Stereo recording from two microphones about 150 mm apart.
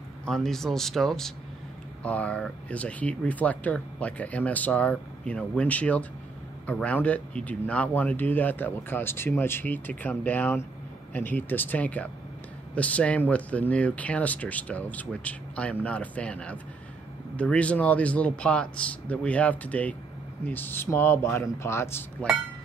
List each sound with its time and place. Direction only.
0.2 s a man's voice: 5° left (ahead or behind)